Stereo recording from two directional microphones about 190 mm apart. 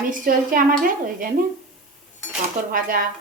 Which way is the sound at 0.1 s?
45° right (ahead or behind).